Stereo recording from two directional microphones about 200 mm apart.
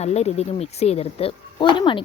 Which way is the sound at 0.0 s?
30° left (ahead or behind).